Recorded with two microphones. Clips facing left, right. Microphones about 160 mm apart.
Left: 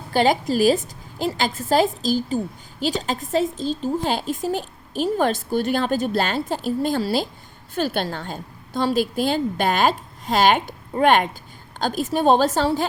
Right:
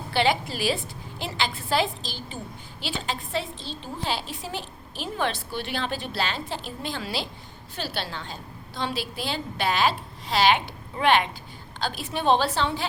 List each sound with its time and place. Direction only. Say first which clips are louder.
0.1 s a woman's voice: left 6 dB; 45° left (ahead or behind)